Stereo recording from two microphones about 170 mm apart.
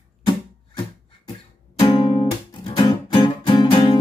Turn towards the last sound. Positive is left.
turn(degrees=30)  # may be behind; listen again after turning